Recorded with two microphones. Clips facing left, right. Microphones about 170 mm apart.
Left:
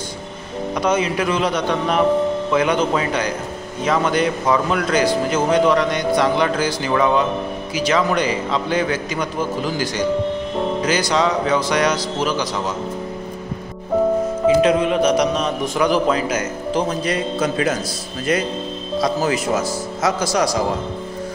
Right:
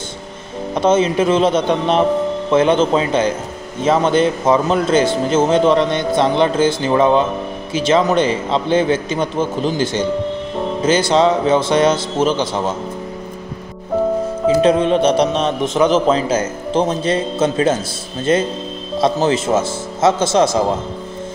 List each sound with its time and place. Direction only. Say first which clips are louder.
0.7 s speech: right 6 dB; 25° right (ahead or behind)
14.6 s speech: right 3 dB; 30° right (ahead or behind)